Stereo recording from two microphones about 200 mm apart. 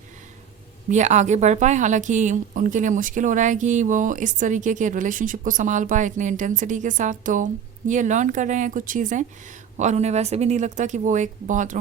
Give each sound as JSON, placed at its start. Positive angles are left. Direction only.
{"t": 0.9, "sound": "a woman's voice", "side_deg": -35}